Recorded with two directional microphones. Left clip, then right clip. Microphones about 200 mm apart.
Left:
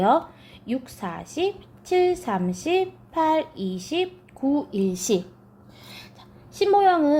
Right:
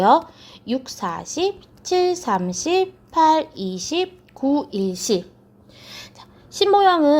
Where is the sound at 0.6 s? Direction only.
25° right (ahead or behind).